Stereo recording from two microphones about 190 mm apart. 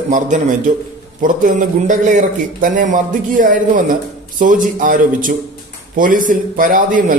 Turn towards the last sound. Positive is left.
turn(degrees=-45)  # may be behind; listen again after turning